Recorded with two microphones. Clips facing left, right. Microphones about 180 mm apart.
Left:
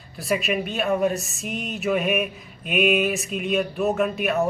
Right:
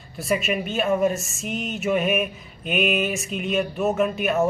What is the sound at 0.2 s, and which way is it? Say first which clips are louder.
Speech: even; centre (ahead or behind).